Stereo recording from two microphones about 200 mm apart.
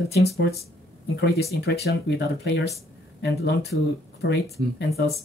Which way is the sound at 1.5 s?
55° left (ahead or behind).